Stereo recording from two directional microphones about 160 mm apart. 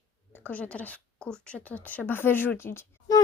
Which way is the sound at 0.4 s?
10° left (ahead or behind).